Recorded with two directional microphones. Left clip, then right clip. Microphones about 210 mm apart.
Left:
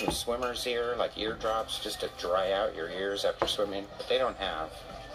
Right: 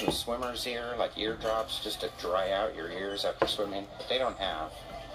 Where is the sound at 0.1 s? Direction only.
30° left (ahead or behind).